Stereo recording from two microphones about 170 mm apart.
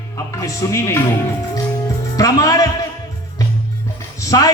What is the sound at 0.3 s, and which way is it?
Music, 20° left (ahead or behind).